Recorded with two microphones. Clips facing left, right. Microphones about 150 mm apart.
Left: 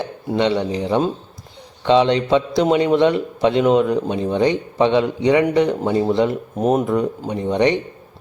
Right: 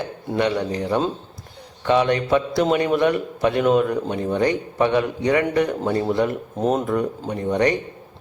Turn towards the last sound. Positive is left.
turn(degrees=20)  # may be behind; listen again after turning